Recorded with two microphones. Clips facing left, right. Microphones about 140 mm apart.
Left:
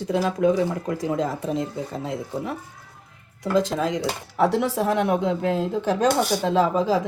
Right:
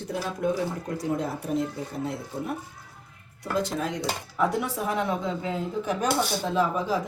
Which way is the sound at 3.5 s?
90° left.